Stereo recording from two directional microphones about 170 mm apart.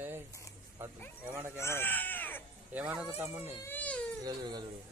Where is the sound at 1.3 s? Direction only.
15° right (ahead or behind).